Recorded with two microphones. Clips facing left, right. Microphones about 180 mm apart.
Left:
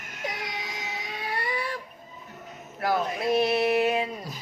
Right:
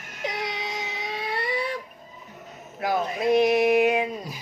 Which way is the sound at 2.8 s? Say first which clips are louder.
Right 1 dB; 15° right (ahead or behind).